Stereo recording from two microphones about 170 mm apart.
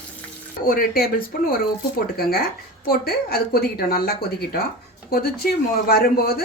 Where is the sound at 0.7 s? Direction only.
60° left (ahead or behind).